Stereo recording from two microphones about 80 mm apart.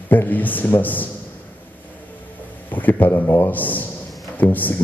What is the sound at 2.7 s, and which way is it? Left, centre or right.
Speech, left.